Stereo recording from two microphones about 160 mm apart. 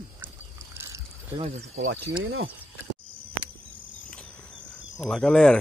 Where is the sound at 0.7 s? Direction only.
20° right (ahead or behind).